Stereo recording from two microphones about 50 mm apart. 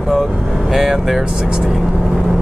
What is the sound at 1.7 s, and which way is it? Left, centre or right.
Speech, centre.